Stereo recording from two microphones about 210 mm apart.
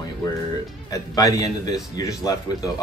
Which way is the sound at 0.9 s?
15° left (ahead or behind).